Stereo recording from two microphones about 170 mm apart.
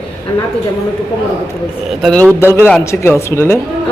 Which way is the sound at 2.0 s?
5° left (ahead or behind).